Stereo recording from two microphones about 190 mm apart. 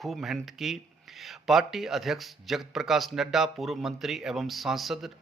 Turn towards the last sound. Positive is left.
turn(degrees=0)  # may be behind; listen again after turning